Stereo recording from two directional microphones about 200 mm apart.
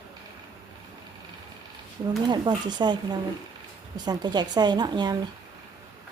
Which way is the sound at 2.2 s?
20° right (ahead or behind).